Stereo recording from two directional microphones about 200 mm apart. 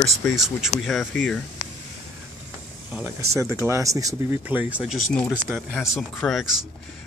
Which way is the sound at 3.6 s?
15° right (ahead or behind).